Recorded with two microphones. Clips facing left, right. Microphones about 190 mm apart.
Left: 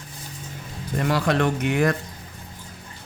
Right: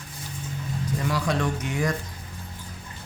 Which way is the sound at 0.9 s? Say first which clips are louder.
Left 5 dB; 60° left (ahead or behind).